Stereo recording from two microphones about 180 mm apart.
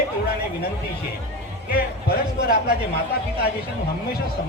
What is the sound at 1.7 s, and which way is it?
A man's voice, 60° left (ahead or behind).